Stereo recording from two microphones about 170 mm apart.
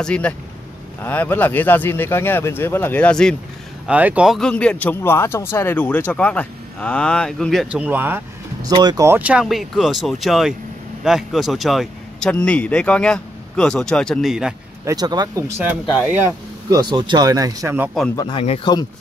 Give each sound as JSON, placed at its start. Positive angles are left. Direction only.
{"t": 0.0, "sound": "speech", "side_deg": 5}
{"t": 3.8, "sound": "speech", "side_deg": -10}
{"t": 8.6, "sound": "speech", "side_deg": -20}
{"t": 14.9, "sound": "speech", "side_deg": -25}
{"t": 18.1, "sound": "speech", "side_deg": 25}
{"t": 18.4, "sound": "speech", "side_deg": 35}